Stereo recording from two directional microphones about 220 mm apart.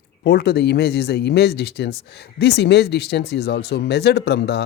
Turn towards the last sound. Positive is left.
turn(degrees=50)  # may be behind; listen again after turning